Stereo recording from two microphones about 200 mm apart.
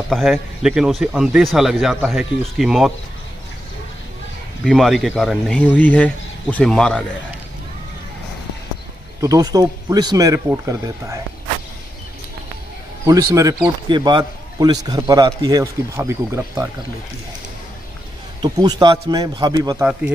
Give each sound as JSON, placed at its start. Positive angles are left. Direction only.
{"t": 0.1, "sound": "a man's voice", "side_deg": 0}
{"t": 4.6, "sound": "a man's voice", "side_deg": 0}
{"t": 9.2, "sound": "speech", "side_deg": -15}
{"t": 13.0, "sound": "a man's voice", "side_deg": -15}
{"t": 18.4, "sound": "a man's voice", "side_deg": -20}